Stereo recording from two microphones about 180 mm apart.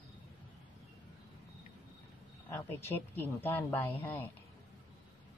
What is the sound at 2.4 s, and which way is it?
Speech, 15° left (ahead or behind).